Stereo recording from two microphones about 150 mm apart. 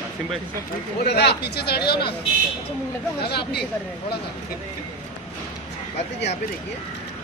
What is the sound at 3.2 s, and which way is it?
Speech, 90° left.